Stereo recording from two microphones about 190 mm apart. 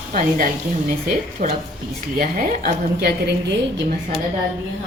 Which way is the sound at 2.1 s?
45° right (ahead or behind).